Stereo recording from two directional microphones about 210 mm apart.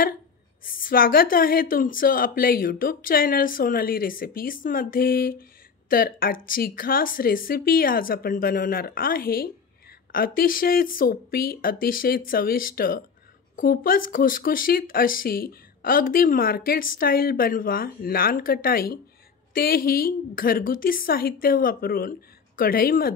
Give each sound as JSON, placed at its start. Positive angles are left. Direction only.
{"t": 0.7, "sound": "speech", "side_deg": 40}